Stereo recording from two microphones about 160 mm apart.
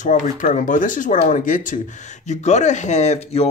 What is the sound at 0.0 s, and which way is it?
Speech, 55° left (ahead or behind).